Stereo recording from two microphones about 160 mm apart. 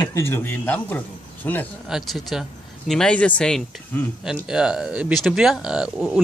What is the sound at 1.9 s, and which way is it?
Speech, centre (ahead or behind).